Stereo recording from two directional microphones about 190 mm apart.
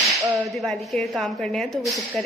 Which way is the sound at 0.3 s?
Centre (ahead or behind).